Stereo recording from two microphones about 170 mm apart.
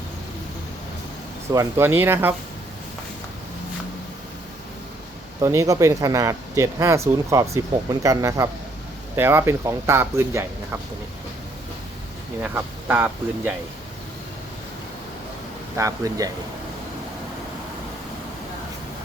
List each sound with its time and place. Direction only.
1.5 s speech: 15° right (ahead or behind)
5.4 s speech: 20° right (ahead or behind)
12.4 s speech: 10° right (ahead or behind)
15.8 s speech: 20° right (ahead or behind)